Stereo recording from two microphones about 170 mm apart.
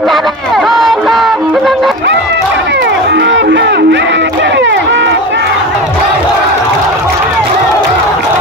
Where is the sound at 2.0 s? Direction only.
90° right.